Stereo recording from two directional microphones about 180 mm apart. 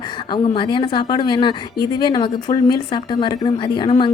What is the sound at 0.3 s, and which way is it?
A woman's voice, 25° left (ahead or behind).